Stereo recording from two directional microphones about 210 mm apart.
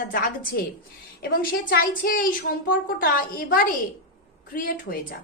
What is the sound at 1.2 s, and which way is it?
A woman's voice, 45° left (ahead or behind).